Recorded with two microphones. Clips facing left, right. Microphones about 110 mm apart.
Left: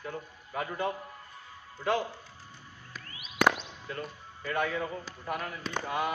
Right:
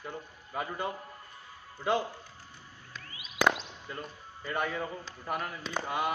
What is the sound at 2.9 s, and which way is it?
Music, 5° left (ahead or behind).